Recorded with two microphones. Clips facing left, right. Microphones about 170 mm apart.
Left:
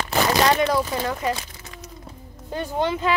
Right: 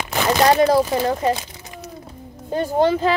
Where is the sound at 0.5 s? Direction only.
35° right (ahead or behind).